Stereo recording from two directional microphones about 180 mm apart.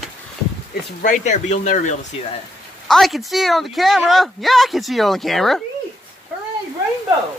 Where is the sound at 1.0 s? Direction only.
45° left (ahead or behind).